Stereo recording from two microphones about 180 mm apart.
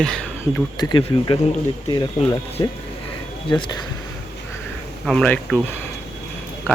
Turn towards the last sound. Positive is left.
turn(degrees=10)  # may be behind; listen again after turning